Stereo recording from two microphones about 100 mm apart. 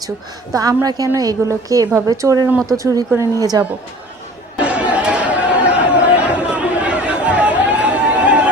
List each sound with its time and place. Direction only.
0.5 s a woman's voice: 35° right (ahead or behind)
4.6 s chatter: 15° right (ahead or behind)